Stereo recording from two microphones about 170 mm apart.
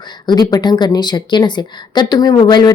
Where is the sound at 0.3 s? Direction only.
25° left (ahead or behind).